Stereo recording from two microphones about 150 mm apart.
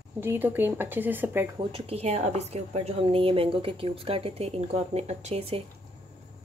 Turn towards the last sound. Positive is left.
turn(degrees=-40)  # may be behind; listen again after turning